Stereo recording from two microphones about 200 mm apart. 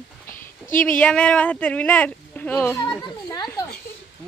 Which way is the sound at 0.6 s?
40° left (ahead or behind).